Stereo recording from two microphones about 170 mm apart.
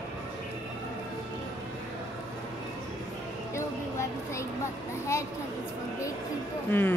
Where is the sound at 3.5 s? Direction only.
15° left (ahead or behind).